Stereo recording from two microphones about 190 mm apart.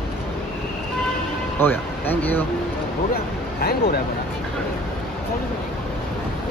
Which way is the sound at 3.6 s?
55° left (ahead or behind).